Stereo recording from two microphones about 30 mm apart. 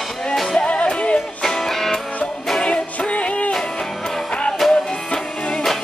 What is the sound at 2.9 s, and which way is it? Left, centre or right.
Music, left.